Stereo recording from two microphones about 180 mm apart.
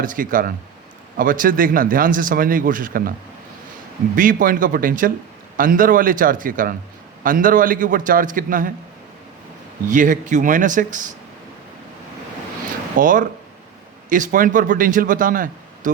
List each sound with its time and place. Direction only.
0.0 s speech: 50° right (ahead or behind)
9.8 s speech: 45° right (ahead or behind)
13.0 s speech: 50° right (ahead or behind)